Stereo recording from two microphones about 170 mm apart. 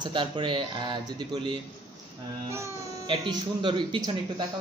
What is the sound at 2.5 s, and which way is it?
Speech, 15° right (ahead or behind).